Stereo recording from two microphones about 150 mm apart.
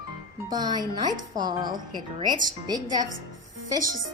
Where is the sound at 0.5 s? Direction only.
25° right (ahead or behind).